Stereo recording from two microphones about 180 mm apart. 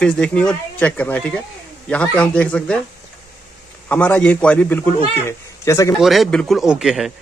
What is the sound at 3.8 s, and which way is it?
Speech, 10° left (ahead or behind).